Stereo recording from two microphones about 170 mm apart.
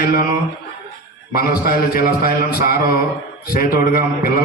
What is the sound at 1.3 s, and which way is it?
A man's voice, 60° left (ahead or behind).